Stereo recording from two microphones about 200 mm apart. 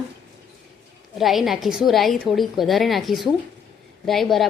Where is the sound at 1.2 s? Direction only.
Centre (ahead or behind).